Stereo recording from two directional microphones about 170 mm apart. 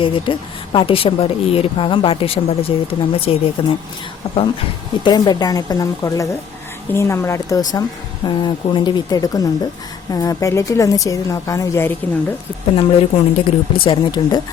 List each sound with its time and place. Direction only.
0.0 s speech: 30° left (ahead or behind)
5.0 s a woman's voice: 25° left (ahead or behind)
12.7 s speech: 30° left (ahead or behind)